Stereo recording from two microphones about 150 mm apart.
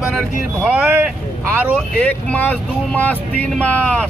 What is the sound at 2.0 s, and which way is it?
Speech, 10° left (ahead or behind).